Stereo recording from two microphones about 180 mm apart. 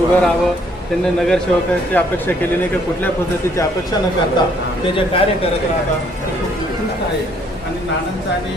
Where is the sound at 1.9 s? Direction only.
10° left (ahead or behind).